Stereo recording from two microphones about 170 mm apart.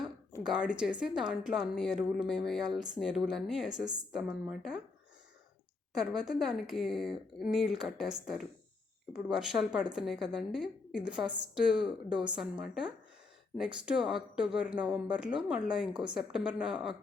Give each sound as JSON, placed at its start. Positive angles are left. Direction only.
{"t": 0.4, "sound": "a woman's voice", "side_deg": -5}
{"t": 5.9, "sound": "a woman's voice", "side_deg": 0}
{"t": 15.9, "sound": "a woman's voice", "side_deg": -25}
{"t": 16.1, "sound": "a woman's voice", "side_deg": -5}